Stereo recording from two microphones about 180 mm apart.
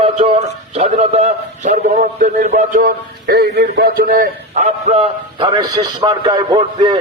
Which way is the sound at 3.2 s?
60° right (ahead or behind).